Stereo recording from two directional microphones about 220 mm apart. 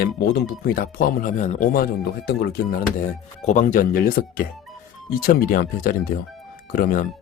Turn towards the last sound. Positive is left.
turn(degrees=40)  # may be behind; listen again after turning